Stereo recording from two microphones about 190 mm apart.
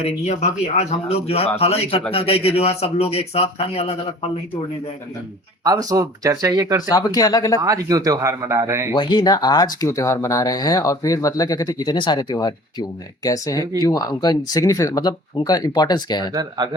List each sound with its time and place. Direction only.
0.0 s a man's voice: 35° left (ahead or behind)
5.6 s speech: 20° right (ahead or behind)
6.9 s speech: 20° left (ahead or behind)
7.6 s speech: 20° right (ahead or behind)
8.9 s speech: 25° left (ahead or behind)
16.3 s speech: 20° right (ahead or behind)